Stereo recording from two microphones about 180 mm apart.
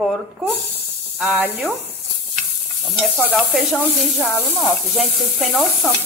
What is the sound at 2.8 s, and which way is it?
Sizzle, centre (ahead or behind).